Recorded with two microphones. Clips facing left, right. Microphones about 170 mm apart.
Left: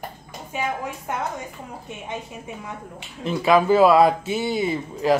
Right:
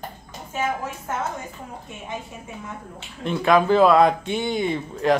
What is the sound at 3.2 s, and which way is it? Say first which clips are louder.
Speech: left 1 dB; 5° left (ahead or behind).